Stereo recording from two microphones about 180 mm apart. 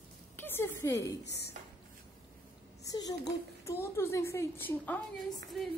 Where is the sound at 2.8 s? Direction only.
20° left (ahead or behind).